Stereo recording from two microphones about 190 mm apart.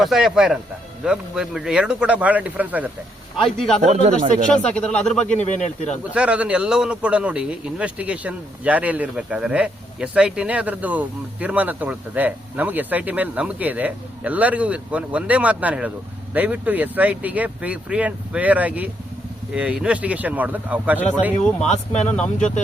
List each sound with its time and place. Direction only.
0.0 s speech: centre (ahead or behind)
3.4 s speech: 5° left (ahead or behind)
3.8 s speech: 35° right (ahead or behind)
4.5 s speech: 5° left (ahead or behind)
5.4 s speech: 40° left (ahead or behind)
6.1 s a man's voice: 5° right (ahead or behind)
21.9 s speech: 5° left (ahead or behind)